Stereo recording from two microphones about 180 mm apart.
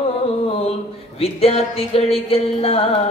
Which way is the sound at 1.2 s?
35° left (ahead or behind).